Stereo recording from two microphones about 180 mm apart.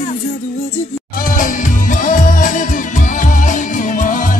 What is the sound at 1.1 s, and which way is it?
Music, 50° left (ahead or behind).